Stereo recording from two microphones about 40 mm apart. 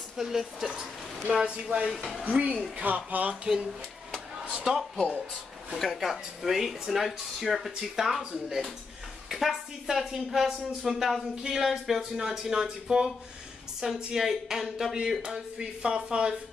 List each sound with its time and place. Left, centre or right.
0.2 s speech: centre
1.3 s speech: right
3.5 s speech: right
4.7 s speech: centre
5.9 s a woman's voice: centre; by 16.3 s right